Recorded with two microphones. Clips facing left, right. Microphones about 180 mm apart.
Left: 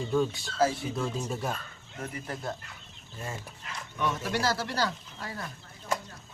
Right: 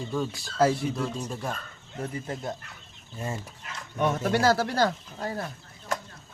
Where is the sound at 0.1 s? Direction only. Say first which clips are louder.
Left 5 dB; centre (ahead or behind).